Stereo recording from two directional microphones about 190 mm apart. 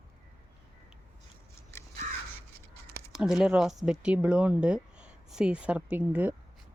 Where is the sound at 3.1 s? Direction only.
5° right (ahead or behind).